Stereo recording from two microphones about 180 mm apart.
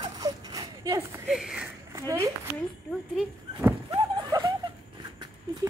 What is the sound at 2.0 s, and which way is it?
Speech, 15° right (ahead or behind).